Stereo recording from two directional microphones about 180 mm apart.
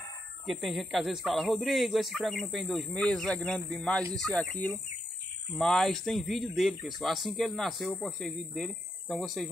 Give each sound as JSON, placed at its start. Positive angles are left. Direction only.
{"t": 0.5, "sound": "speech", "side_deg": 0}